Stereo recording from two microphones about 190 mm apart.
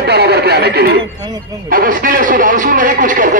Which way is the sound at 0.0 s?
55° right (ahead or behind).